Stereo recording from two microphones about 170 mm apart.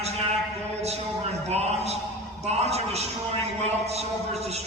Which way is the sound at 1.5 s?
40° right (ahead or behind).